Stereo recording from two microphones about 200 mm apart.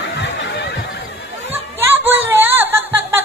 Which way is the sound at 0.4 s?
60° left (ahead or behind).